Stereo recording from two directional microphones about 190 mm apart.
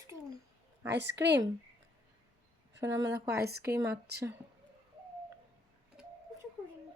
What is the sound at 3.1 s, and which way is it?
Speech, 55° right (ahead or behind).